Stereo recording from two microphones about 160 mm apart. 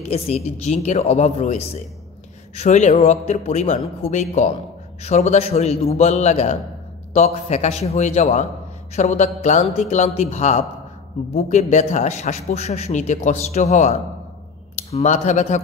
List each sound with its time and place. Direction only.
0.0 s a man's voice: 40° left (ahead or behind)